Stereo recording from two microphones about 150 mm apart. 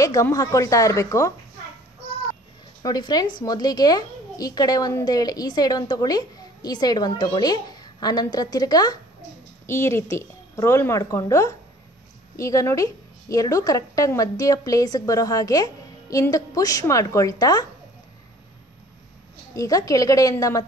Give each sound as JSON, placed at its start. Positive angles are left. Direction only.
{"t": 0.0, "sound": "a woman's voice", "side_deg": 25}
{"t": 2.8, "sound": "a woman's voice", "side_deg": 25}
{"t": 19.5, "sound": "a woman's voice", "side_deg": 20}